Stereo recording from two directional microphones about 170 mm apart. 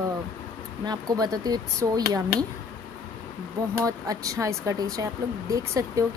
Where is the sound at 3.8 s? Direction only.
20° right (ahead or behind).